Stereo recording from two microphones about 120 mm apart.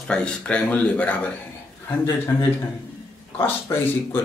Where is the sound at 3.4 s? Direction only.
20° left (ahead or behind).